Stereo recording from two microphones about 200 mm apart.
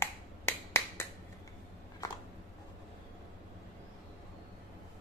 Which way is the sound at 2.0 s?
15° left (ahead or behind).